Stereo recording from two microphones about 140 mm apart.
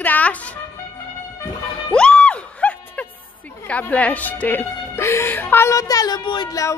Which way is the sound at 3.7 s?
10° left (ahead or behind).